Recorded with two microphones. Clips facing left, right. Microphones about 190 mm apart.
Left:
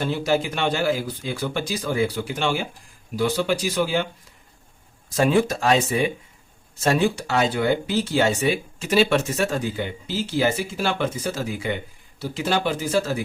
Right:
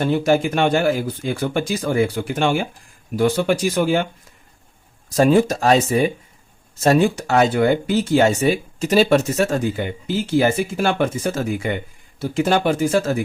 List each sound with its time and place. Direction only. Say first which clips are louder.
0.0 s speech: right 5 dB; 50° right (ahead or behind)
5.0 s speech: right 4 dB; 40° right (ahead or behind)